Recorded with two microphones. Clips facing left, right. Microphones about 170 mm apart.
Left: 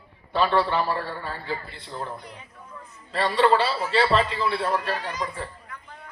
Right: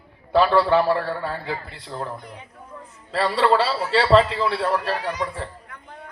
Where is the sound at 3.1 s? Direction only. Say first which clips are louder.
Right 1 dB; 90° right.